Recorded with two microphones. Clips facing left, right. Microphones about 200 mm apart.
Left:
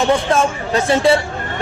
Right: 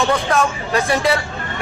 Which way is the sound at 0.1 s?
25° left (ahead or behind).